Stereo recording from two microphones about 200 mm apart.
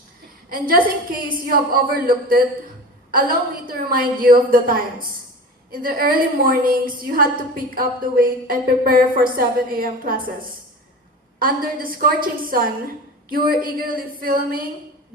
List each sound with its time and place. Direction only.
0.5 s a woman's voice: 45° right (ahead or behind)
11.3 s a woman's voice: 45° right (ahead or behind)